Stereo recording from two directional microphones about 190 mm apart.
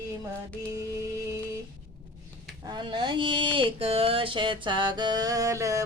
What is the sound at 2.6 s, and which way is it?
Speech, 25° right (ahead or behind).